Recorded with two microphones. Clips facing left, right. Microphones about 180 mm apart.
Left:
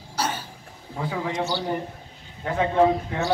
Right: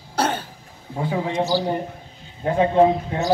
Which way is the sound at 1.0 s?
25° right (ahead or behind).